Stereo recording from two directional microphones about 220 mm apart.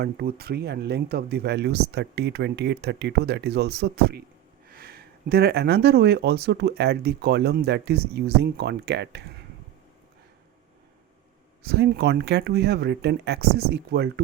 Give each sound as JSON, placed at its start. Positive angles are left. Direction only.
{"t": 0.0, "sound": "speech", "side_deg": -45}
{"t": 11.6, "sound": "speech", "side_deg": -50}